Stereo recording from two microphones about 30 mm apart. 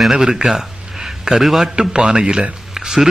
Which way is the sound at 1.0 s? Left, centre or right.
Centre.